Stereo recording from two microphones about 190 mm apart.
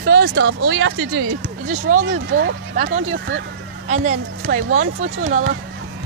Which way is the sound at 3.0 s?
90° right.